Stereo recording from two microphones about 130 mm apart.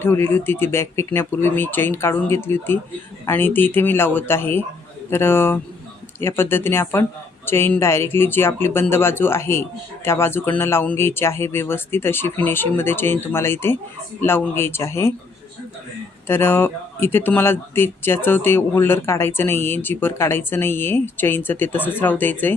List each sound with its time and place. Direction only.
0.0 s speech: 15° left (ahead or behind)
16.2 s speech: 15° left (ahead or behind)